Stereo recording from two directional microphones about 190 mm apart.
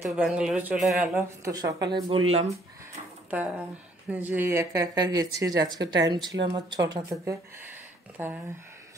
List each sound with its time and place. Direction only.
0.0 s speech: centre (ahead or behind); by 2.2 s 25° right (ahead or behind)
3.3 s speech: 10° right (ahead or behind)